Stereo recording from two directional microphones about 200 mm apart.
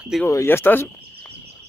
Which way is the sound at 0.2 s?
10° left (ahead or behind).